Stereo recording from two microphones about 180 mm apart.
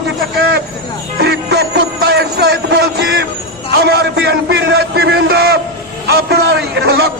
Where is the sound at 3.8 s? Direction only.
65° right (ahead or behind).